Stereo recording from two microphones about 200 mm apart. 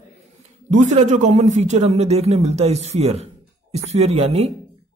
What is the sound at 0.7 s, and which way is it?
Speech, 40° right (ahead or behind).